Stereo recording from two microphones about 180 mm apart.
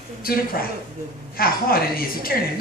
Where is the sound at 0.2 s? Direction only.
55° left (ahead or behind).